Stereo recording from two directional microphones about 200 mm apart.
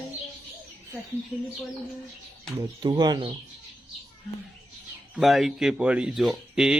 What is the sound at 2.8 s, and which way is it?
Speech, 20° right (ahead or behind).